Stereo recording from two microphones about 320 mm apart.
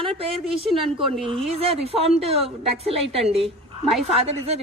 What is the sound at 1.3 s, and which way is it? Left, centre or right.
A woman's voice, centre.